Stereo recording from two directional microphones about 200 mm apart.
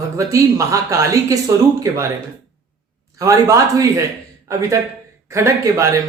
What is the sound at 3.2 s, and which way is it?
Speech, 15° right (ahead or behind).